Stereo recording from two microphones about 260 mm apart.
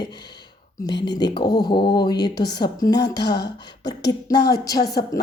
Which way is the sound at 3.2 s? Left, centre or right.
Left.